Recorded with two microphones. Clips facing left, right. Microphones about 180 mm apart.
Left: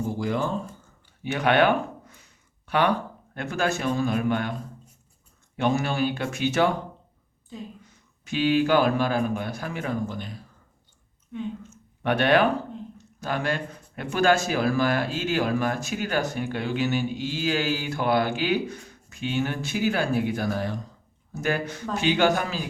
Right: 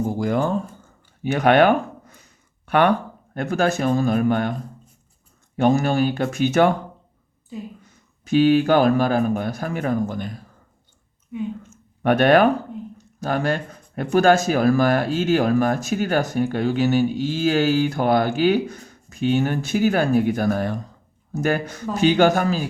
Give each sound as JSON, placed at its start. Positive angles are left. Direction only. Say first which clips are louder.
{"t": 0.2, "sound": "speech", "louder": "right 6 dB", "side_deg": -50}
{"t": 2.6, "sound": "speech", "louder": "right 5 dB", "side_deg": -55}
{"t": 3.3, "sound": "speech", "louder": "right 6 dB", "side_deg": -40}
{"t": 5.5, "sound": "speech", "louder": "right 6 dB", "side_deg": -45}
{"t": 8.2, "sound": "speech", "louder": "right 6 dB", "side_deg": -45}
{"t": 12.0, "sound": "speech", "louder": "right 6 dB", "side_deg": -45}